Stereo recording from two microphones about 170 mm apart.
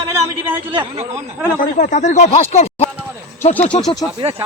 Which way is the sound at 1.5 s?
50° left (ahead or behind).